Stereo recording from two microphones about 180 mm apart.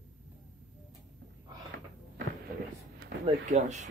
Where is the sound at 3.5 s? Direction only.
40° right (ahead or behind).